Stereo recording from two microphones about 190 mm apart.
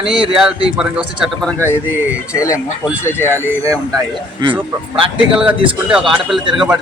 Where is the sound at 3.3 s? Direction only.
10° right (ahead or behind).